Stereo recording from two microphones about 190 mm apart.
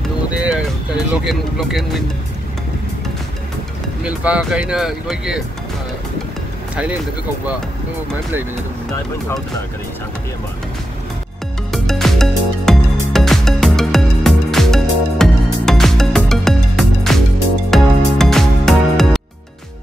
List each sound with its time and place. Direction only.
1.1 s speech: centre (ahead or behind)
4.0 s speech: 5° right (ahead or behind)
11.7 s music: centre (ahead or behind)